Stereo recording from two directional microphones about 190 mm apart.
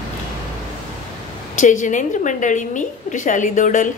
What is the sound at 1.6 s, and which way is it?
A woman's voice, 40° left (ahead or behind).